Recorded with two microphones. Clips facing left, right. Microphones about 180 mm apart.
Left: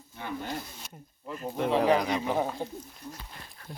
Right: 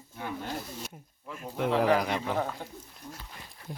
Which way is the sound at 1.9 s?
5° right (ahead or behind).